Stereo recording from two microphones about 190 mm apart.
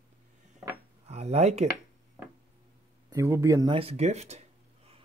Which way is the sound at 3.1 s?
15° right (ahead or behind).